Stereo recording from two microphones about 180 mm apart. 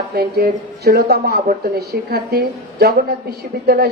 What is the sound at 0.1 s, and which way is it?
A woman's voice, 60° right (ahead or behind).